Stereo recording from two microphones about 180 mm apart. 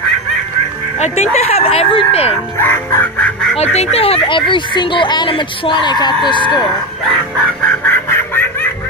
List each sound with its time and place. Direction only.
0.9 s speech: 40° left (ahead or behind)
2.6 s chicken: 10° left (ahead or behind)
3.5 s speech: 35° left (ahead or behind)
7.6 s quack: 10° left (ahead or behind)